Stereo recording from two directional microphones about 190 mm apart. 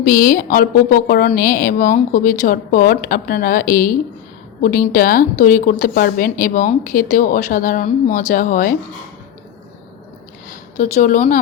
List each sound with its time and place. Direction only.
0.0 s a woman's voice: 45° left (ahead or behind)
10.5 s speech: 45° left (ahead or behind)